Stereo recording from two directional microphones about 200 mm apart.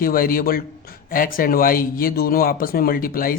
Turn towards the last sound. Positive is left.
turn(degrees=45)  # may be behind; listen again after turning